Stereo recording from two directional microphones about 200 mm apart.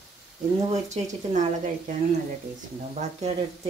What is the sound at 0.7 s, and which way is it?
Speech, 35° right (ahead or behind).